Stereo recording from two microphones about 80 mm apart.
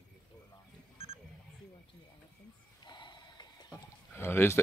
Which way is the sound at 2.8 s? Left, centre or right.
Left.